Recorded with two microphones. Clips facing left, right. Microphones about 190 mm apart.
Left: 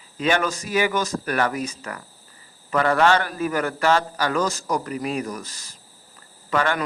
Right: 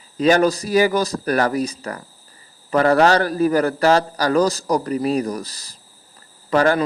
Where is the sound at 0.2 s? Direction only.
35° right (ahead or behind).